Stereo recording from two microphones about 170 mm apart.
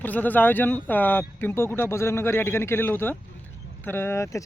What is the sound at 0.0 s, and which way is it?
Speech, 10° left (ahead or behind).